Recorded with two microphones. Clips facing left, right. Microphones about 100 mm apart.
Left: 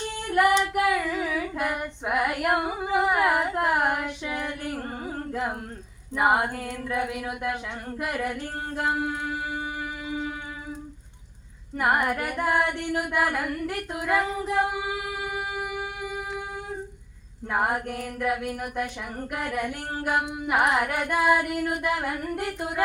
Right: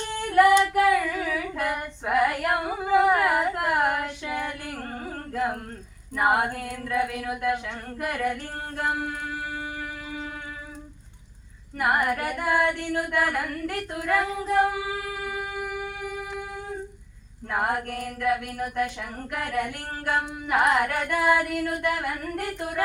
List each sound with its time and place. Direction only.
0.3 s female singing: 15° left (ahead or behind)
2.0 s a sound: 15° left (ahead or behind)
3.5 s child singing: 20° left (ahead or behind)
5.0 s singing: 15° left (ahead or behind)
6.1 s female singing: 15° left (ahead or behind)
12.0 s female singing: 20° left (ahead or behind)
17.5 s female singing: 15° left (ahead or behind)